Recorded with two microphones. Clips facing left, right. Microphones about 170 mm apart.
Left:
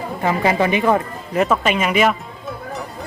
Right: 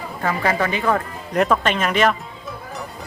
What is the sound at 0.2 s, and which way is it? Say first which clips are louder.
Speech: left 3 dB; 20° left (ahead or behind).